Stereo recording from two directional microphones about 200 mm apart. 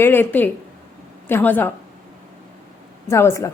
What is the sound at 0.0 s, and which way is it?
A woman's voice, 10° left (ahead or behind).